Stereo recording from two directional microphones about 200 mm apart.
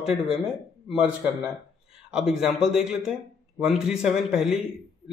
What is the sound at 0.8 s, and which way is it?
Speech, 5° right (ahead or behind).